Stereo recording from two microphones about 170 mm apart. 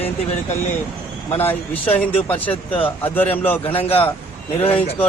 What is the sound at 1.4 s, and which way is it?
Speech, 10° left (ahead or behind).